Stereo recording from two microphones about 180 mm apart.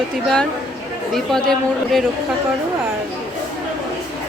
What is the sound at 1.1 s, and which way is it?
Speech, centre (ahead or behind).